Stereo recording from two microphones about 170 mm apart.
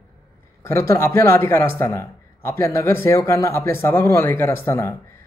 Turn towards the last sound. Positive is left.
turn(degrees=15)  # may be behind; listen again after turning